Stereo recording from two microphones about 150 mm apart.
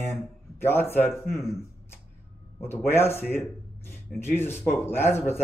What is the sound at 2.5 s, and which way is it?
Speech, 15° left (ahead or behind).